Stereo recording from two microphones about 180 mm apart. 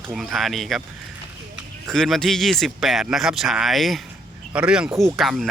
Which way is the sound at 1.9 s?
Centre (ahead or behind).